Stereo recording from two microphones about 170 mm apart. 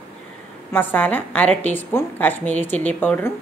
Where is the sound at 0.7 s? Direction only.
10° left (ahead or behind).